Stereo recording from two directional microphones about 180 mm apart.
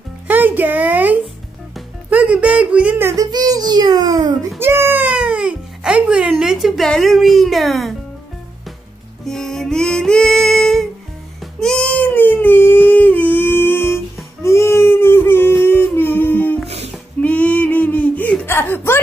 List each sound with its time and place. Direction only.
0.3 s a child's voice: 10° right (ahead or behind)
9.2 s music: 5° left (ahead or behind)
11.6 s dog: 5° left (ahead or behind)
15.6 s humming: 10° left (ahead or behind)
16.6 s music: 35° right (ahead or behind)
16.9 s a sound: 5° left (ahead or behind)